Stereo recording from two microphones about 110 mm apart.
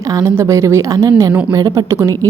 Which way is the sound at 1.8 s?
25° right (ahead or behind).